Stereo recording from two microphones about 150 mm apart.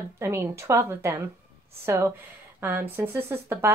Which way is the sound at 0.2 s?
15° right (ahead or behind).